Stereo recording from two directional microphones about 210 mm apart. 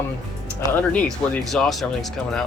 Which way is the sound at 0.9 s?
5° left (ahead or behind).